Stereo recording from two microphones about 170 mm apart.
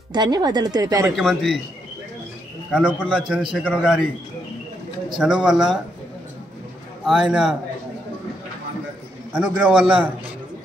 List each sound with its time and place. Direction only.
0.1 s speech: 25° right (ahead or behind)
1.1 s a man's voice: centre (ahead or behind)
2.7 s a man's voice: 5° right (ahead or behind)
5.2 s a man's voice: 5° right (ahead or behind)
7.1 s a man's voice: 5° right (ahead or behind)
9.3 s a man's voice: 5° right (ahead or behind)